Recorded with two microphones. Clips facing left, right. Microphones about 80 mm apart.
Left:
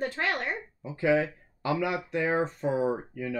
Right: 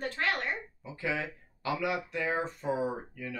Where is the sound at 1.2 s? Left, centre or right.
Left.